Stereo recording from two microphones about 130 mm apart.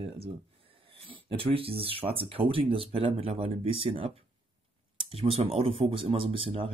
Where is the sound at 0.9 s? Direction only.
45° right (ahead or behind).